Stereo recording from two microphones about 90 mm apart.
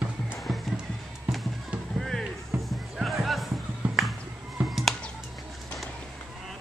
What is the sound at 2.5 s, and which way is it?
Music, 15° right (ahead or behind).